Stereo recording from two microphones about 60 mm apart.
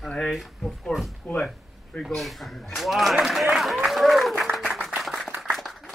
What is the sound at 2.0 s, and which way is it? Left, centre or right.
A woman's voice, centre.